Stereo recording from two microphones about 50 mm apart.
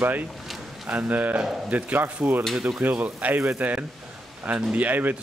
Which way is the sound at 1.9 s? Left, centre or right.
Right.